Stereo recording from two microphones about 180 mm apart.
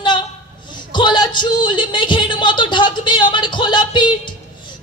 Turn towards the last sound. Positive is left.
turn(degrees=25)  # may be behind; listen again after turning